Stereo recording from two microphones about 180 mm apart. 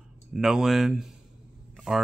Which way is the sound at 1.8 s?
Centre (ahead or behind).